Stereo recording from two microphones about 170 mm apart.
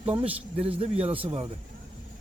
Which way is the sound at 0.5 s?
35° right (ahead or behind).